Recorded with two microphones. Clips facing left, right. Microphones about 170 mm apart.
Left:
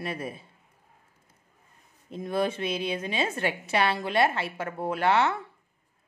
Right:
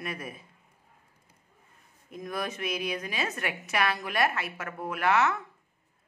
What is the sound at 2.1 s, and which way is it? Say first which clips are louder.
A woman's voice: left 7 dB; 30° left (ahead or behind).